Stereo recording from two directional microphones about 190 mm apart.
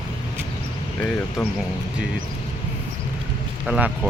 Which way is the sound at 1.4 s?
Centre (ahead or behind).